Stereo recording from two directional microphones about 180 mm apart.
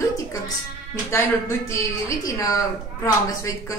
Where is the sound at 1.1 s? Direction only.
15° left (ahead or behind).